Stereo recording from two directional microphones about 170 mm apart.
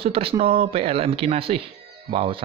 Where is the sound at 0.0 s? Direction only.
35° right (ahead or behind).